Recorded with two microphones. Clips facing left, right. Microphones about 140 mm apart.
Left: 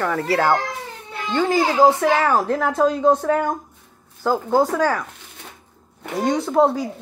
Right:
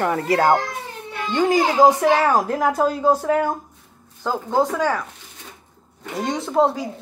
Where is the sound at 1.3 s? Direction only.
15° right (ahead or behind); by 4.7 s 5° left (ahead or behind).